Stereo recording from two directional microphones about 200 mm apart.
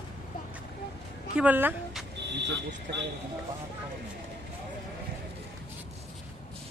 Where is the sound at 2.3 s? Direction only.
60° right (ahead or behind).